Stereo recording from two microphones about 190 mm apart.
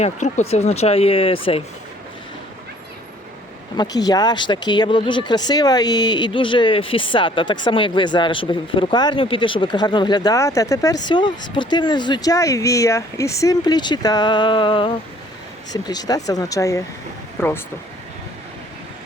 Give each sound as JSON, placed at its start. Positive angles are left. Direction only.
{"t": 0.0, "sound": "speech", "side_deg": 35}
{"t": 3.8, "sound": "speech", "side_deg": 20}